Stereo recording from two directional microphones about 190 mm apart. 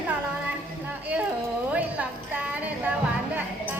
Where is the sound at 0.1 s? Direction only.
10° right (ahead or behind).